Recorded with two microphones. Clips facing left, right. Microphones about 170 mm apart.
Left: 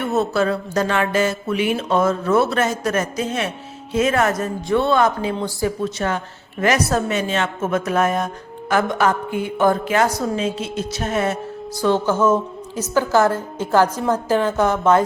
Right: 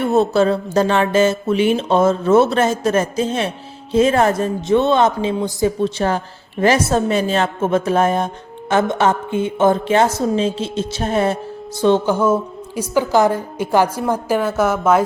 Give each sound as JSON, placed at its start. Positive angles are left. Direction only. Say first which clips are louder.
{"t": 0.0, "sound": "speech", "louder": "right 5 dB", "side_deg": -30}
{"t": 11.8, "sound": "a woman's voice", "louder": "right 3 dB", "side_deg": -20}